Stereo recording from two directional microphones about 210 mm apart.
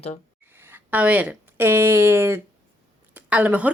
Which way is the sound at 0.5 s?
10° right (ahead or behind).